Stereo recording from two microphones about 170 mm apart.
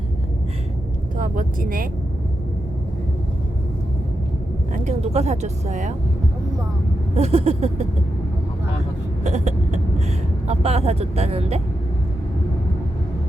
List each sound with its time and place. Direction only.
1.1 s speech: 50° right (ahead or behind)
4.7 s speech: 45° right (ahead or behind)
7.1 s speech: 40° right (ahead or behind)
9.2 s vehicle: 45° right (ahead or behind)
10.4 s speech: 40° right (ahead or behind)